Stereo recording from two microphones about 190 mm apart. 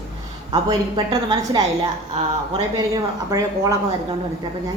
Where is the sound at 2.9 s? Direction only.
20° right (ahead or behind).